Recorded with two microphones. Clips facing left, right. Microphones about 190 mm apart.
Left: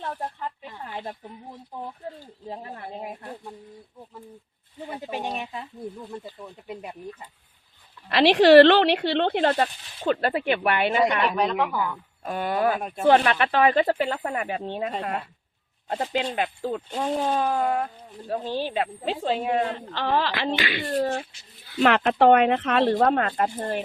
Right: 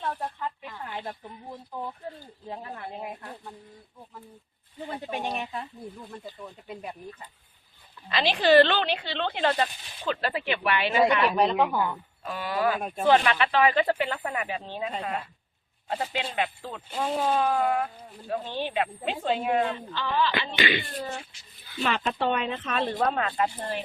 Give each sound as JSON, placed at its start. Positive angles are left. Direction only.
{"t": 0.6, "sound": "a sound", "side_deg": 20}
{"t": 4.8, "sound": "speech", "side_deg": 10}
{"t": 8.1, "sound": "speech", "side_deg": 70}
{"t": 11.0, "sound": "speech", "side_deg": -5}
{"t": 12.2, "sound": "speech", "side_deg": 50}
{"t": 15.9, "sound": "speech", "side_deg": 45}
{"t": 19.7, "sound": "speech", "side_deg": 70}
{"t": 20.6, "sound": "speech", "side_deg": 0}
{"t": 21.0, "sound": "speech", "side_deg": 65}
{"t": 23.0, "sound": "speech", "side_deg": 50}